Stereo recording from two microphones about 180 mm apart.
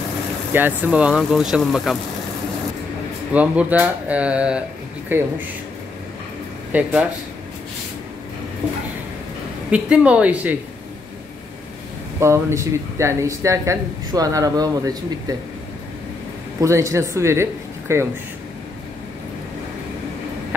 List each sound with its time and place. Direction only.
0.5 s speech: 10° right (ahead or behind)
3.3 s speech: 5° right (ahead or behind)
6.7 s speech: 5° right (ahead or behind)
9.7 s speech: 5° right (ahead or behind)
12.2 s speech: 15° right (ahead or behind)
16.6 s speech: 15° right (ahead or behind)